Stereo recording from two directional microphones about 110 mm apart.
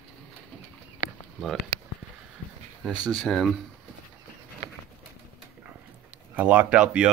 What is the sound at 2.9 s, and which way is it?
Speech, 35° right (ahead or behind).